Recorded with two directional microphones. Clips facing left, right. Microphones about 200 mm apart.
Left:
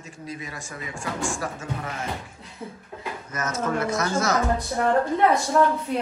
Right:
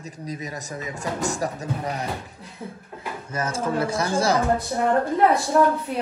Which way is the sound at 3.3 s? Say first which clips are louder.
Right 2 dB; 30° right (ahead or behind).